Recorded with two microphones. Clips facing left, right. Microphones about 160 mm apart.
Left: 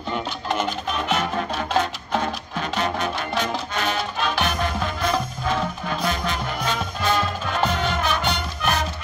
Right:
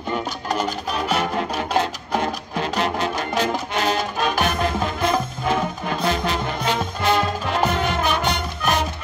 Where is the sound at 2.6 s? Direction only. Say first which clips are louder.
Right 2 dB; 30° right (ahead or behind).